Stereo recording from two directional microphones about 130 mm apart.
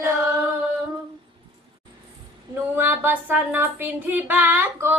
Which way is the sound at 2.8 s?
15° right (ahead or behind).